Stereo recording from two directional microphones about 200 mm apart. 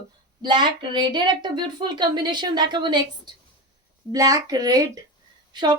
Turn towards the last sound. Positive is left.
turn(degrees=-20)  # may be behind; listen again after turning